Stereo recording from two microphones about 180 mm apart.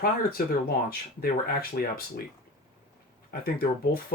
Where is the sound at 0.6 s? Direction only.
55° left (ahead or behind).